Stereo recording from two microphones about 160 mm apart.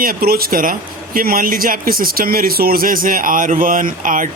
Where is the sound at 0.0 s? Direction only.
70° right (ahead or behind).